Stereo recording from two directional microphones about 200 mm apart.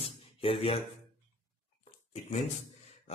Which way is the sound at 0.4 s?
30° left (ahead or behind).